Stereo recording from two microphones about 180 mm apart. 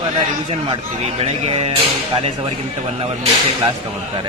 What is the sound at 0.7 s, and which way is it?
Speech, 35° right (ahead or behind).